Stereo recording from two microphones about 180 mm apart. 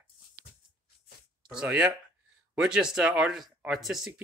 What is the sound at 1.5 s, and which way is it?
Speech, 5° right (ahead or behind).